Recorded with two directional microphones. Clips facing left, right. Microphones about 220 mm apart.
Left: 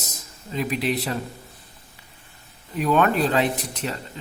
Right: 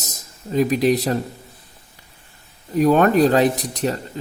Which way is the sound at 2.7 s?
40° right (ahead or behind).